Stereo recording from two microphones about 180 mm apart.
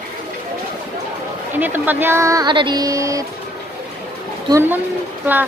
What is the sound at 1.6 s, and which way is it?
Speech, 10° right (ahead or behind).